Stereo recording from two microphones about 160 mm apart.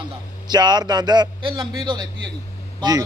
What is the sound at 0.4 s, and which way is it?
A man's voice, 25° right (ahead or behind).